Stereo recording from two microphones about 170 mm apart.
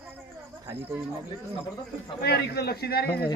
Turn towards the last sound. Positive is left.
turn(degrees=65)  # may be behind; listen again after turning